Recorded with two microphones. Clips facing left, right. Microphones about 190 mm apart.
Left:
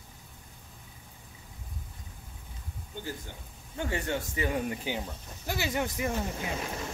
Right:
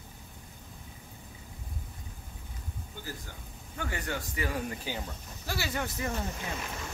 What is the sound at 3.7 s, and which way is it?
Speech, 25° left (ahead or behind).